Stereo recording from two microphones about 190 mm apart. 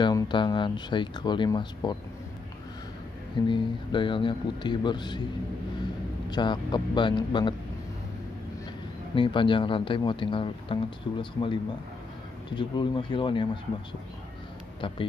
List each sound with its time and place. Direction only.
0.0 s speech: 25° left (ahead or behind)
3.4 s speech: 25° left (ahead or behind)
6.3 s speech: 25° left (ahead or behind)
9.1 s speech: 25° left (ahead or behind)